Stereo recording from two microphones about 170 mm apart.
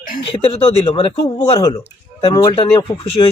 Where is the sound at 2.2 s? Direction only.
30° left (ahead or behind).